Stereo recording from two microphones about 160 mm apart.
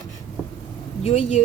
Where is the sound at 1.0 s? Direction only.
40° left (ahead or behind).